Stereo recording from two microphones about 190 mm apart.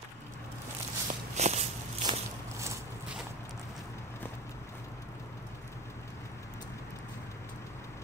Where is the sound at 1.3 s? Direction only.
35° right (ahead or behind).